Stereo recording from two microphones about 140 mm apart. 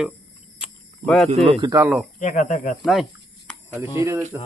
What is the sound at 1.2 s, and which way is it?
Speech, 50° right (ahead or behind).